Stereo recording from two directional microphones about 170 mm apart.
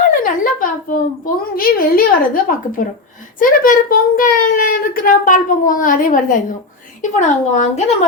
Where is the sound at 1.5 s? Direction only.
60° left (ahead or behind); by 7.9 s 40° left (ahead or behind).